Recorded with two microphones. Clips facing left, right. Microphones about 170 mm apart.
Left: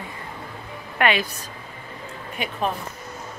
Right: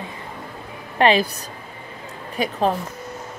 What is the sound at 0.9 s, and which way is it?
Speech, 30° right (ahead or behind).